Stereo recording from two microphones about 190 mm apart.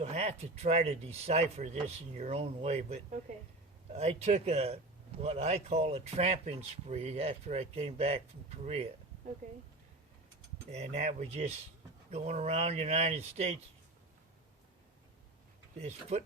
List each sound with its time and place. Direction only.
0.0 s speech: 35° right (ahead or behind)
10.7 s speech: 35° right (ahead or behind)
15.8 s speech: 35° right (ahead or behind)